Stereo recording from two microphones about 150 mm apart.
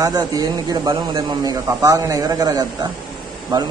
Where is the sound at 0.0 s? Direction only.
25° right (ahead or behind).